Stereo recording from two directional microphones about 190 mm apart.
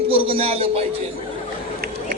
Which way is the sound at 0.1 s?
30° right (ahead or behind).